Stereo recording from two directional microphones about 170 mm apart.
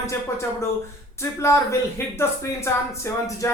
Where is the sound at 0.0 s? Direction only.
15° left (ahead or behind).